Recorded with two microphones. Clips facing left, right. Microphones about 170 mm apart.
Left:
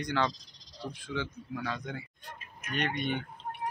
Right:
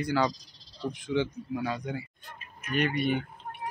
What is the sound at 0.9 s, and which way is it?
Speech, 20° right (ahead or behind).